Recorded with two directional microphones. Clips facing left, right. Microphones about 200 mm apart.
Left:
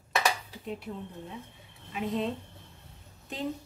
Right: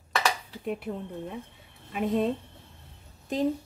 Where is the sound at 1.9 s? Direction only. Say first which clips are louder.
Right 5 dB; 50° right (ahead or behind).